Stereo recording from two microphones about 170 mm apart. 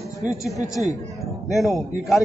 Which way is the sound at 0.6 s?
20° left (ahead or behind).